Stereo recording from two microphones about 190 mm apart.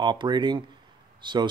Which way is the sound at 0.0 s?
25° right (ahead or behind).